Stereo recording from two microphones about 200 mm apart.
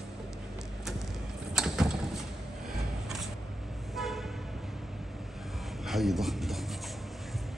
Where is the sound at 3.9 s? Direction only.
Centre (ahead or behind).